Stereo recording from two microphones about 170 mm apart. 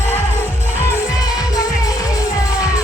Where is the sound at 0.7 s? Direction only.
15° left (ahead or behind).